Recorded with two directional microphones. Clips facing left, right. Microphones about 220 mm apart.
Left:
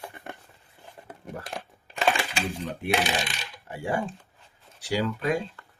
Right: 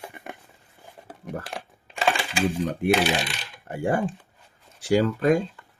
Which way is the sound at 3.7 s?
50° right (ahead or behind).